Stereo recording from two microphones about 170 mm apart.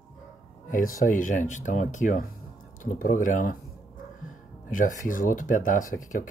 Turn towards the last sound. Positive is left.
turn(degrees=50)  # may be behind; listen again after turning